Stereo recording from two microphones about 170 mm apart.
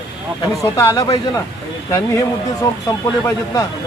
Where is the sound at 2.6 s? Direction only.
20° left (ahead or behind).